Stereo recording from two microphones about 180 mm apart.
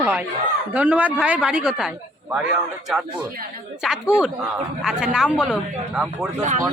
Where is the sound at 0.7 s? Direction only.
10° right (ahead or behind).